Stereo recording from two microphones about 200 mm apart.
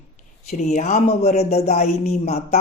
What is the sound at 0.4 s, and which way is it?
A man's voice, 35° left (ahead or behind).